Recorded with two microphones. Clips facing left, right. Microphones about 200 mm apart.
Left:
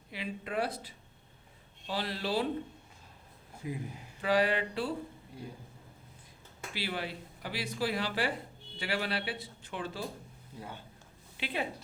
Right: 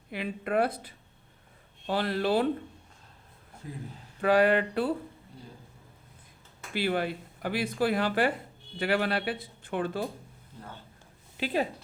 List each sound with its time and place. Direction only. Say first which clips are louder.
0.1 s a woman's voice: right 7 dB; 55° right (ahead or behind)
3.6 s a man's voice: left 3 dB; 10° left (ahead or behind)
4.2 s a woman's voice: right 6 dB; 55° right (ahead or behind)
6.7 s speech: right 9 dB; 55° right (ahead or behind)
10.6 s a man's voice: left 1 dB; 15° left (ahead or behind)
11.3 s speech: right 7 dB; 40° right (ahead or behind)